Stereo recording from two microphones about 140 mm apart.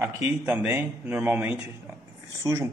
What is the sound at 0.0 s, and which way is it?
Speech, 15° right (ahead or behind).